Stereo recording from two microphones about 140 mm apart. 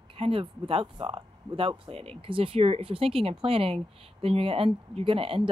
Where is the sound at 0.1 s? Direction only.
40° right (ahead or behind).